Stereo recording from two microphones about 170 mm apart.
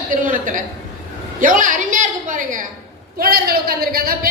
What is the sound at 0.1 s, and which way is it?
A woman's voice, 50° right (ahead or behind).